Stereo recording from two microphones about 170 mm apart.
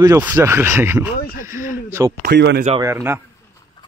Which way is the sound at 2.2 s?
80° right.